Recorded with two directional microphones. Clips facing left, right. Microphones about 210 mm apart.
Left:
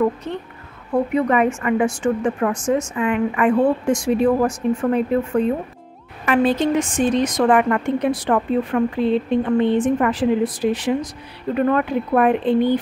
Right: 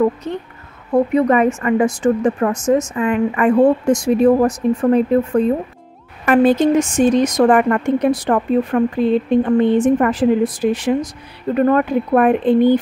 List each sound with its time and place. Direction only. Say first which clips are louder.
1.1 s speech: right 2 dB; 40° right (ahead or behind)
6.2 s a woman's voice: right 5 dB; 45° right (ahead or behind)